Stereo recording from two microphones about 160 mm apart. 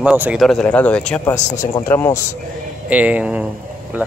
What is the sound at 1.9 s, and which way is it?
Speech, 15° left (ahead or behind).